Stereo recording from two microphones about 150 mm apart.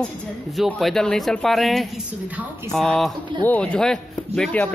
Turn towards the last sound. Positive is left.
turn(degrees=5)  # may be behind; listen again after turning